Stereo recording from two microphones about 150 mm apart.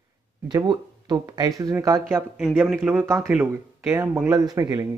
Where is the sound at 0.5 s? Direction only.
30° right (ahead or behind).